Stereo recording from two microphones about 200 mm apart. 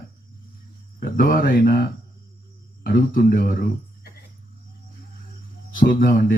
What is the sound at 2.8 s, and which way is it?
Speech, 45° left (ahead or behind).